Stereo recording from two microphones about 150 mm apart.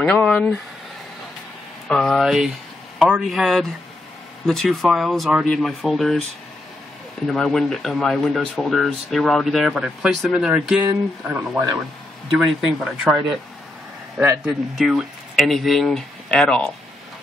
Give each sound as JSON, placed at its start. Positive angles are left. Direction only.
{"t": 0.0, "sound": "speech", "side_deg": 5}
{"t": 1.9, "sound": "speech", "side_deg": 0}
{"t": 7.2, "sound": "speech", "side_deg": 0}
{"t": 10.8, "sound": "speech", "side_deg": -20}
{"t": 12.4, "sound": "speech", "side_deg": 0}
{"t": 14.5, "sound": "speech", "side_deg": 0}